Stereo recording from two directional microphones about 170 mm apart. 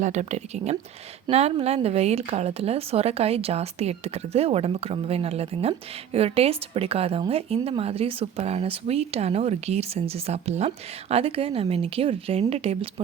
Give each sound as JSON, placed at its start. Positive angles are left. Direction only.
{"t": 0.0, "sound": "a woman's voice", "side_deg": -40}